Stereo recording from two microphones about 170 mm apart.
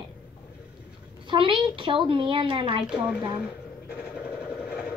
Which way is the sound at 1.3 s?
30° right (ahead or behind).